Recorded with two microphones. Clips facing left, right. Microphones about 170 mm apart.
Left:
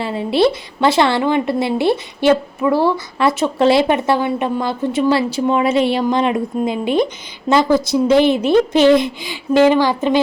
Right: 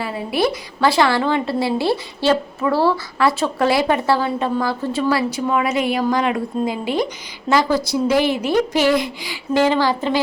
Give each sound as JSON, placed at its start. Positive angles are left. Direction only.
{"t": 0.0, "sound": "a woman's voice", "side_deg": 25}